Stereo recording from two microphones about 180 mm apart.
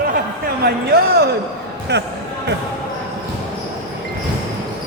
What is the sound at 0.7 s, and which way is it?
Speech, 60° right (ahead or behind).